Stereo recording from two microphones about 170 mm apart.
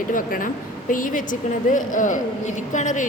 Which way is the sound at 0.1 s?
55° left (ahead or behind).